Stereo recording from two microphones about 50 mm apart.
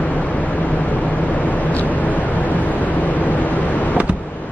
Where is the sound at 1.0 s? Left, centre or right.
Left.